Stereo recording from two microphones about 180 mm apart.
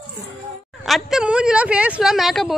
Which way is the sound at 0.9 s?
Centre (ahead or behind).